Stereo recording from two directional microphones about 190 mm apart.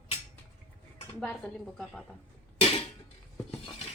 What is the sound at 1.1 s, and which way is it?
A woman's voice, 5° left (ahead or behind).